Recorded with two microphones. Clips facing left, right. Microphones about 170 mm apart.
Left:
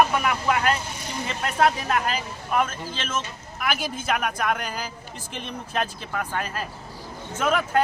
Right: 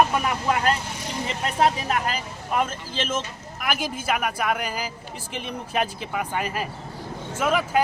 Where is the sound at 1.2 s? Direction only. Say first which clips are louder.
Even; 15° right (ahead or behind).